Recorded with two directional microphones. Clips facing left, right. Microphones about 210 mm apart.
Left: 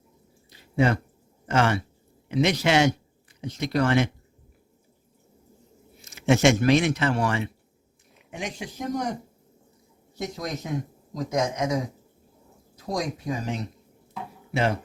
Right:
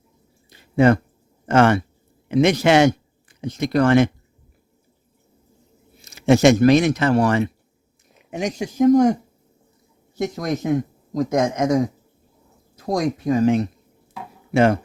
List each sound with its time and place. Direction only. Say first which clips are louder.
0.5 s a sound: right 7 dB; 55° right (ahead or behind)
1.5 s speech: right 7 dB; 55° right (ahead or behind)
6.0 s speech: right 6 dB; 35° right (ahead or behind)
10.3 s speech: right 10 dB; 50° right (ahead or behind)